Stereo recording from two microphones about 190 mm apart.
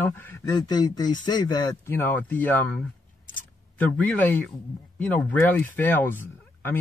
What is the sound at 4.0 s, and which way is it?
Speech, 10° left (ahead or behind).